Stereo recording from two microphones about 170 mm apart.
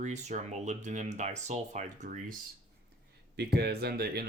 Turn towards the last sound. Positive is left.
turn(degrees=-70)  # may be behind; listen again after turning